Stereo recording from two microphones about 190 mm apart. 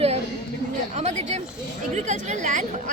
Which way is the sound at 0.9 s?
35° right (ahead or behind).